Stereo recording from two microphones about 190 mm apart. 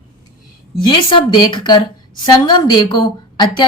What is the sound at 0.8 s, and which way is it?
A woman's voice, 25° left (ahead or behind).